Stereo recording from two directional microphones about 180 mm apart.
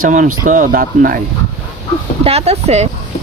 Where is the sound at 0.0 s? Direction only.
45° right (ahead or behind).